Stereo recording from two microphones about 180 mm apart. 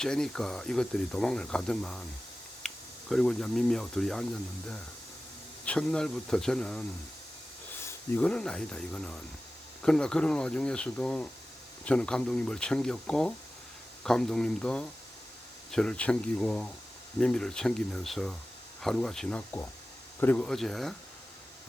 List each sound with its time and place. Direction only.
0.0 s speech: 5° left (ahead or behind)
5.6 s speech: 5° left (ahead or behind)
7.9 s speech: 10° left (ahead or behind)